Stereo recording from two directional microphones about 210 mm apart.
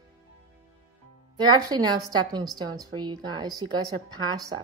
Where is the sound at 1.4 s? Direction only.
20° right (ahead or behind).